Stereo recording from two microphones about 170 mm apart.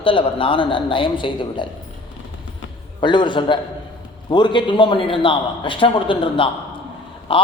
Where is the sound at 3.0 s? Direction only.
25° left (ahead or behind).